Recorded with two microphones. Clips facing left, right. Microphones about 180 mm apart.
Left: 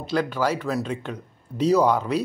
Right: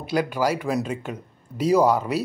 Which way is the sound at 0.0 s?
10° right (ahead or behind).